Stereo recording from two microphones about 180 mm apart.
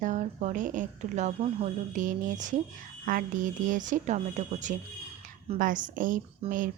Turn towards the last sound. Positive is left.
turn(degrees=-50)  # may be behind; listen again after turning